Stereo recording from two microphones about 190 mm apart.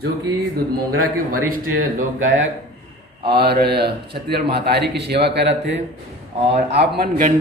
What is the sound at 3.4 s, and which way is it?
A man's voice, 60° right (ahead or behind).